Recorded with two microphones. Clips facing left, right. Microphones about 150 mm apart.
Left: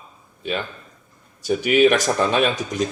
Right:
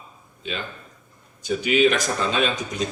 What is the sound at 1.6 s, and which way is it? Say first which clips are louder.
Speech: left 3 dB; 50° left (ahead or behind).